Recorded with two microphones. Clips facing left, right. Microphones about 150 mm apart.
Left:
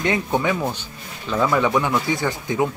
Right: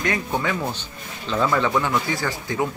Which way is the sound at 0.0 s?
20° left (ahead or behind).